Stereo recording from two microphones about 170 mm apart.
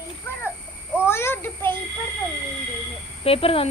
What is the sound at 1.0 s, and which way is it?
Speech, 15° left (ahead or behind).